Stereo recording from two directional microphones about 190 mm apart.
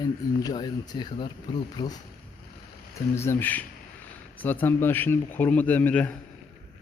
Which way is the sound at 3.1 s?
15° left (ahead or behind).